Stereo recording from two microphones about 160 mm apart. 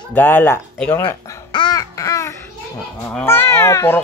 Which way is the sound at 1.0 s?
30° left (ahead or behind).